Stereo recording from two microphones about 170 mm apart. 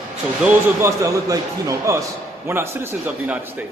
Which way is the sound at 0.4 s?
15° right (ahead or behind).